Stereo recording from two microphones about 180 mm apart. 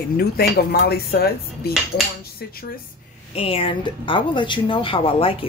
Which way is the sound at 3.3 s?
30° left (ahead or behind).